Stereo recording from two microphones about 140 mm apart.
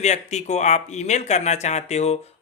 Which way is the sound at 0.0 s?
55° left (ahead or behind).